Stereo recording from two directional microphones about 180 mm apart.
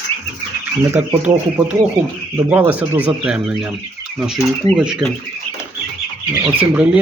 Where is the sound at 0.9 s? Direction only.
10° right (ahead or behind).